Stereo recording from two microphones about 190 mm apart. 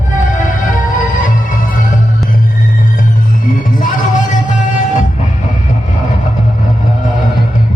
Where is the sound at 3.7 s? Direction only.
45° left (ahead or behind).